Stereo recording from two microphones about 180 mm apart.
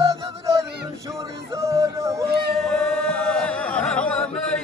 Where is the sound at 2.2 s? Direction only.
60° right (ahead or behind).